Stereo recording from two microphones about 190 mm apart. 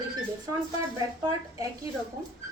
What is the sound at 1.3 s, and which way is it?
Speech, 20° right (ahead or behind).